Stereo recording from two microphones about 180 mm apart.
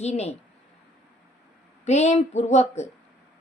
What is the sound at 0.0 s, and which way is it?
Speech, 35° left (ahead or behind).